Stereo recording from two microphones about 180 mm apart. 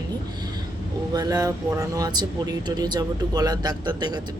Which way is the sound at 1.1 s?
20° right (ahead or behind).